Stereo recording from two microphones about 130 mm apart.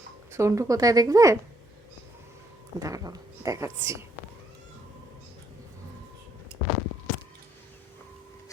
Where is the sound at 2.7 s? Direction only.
25° right (ahead or behind).